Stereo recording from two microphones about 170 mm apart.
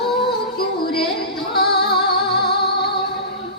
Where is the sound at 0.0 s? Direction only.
70° left (ahead or behind).